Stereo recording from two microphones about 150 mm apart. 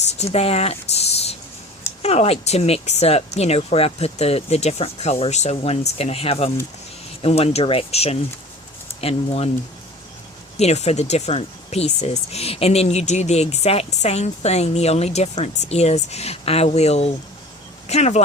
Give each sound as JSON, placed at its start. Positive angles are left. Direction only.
{"t": 0.2, "sound": "speech", "side_deg": 45}
{"t": 10.6, "sound": "speech", "side_deg": 45}